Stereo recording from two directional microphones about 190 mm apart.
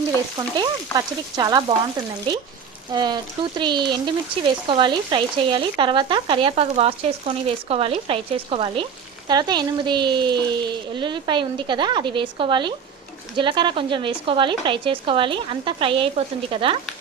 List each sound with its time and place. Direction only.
0.3 s speech: 20° right (ahead or behind)